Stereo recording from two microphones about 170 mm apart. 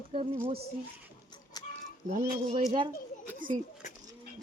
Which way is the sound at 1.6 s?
25° left (ahead or behind).